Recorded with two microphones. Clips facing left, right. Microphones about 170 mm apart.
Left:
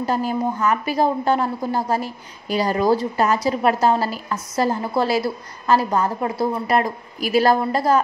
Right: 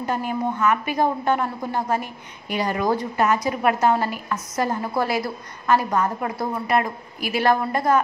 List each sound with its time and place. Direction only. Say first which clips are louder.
0.0 s a woman's voice: left 3 dB; 35° left (ahead or behind)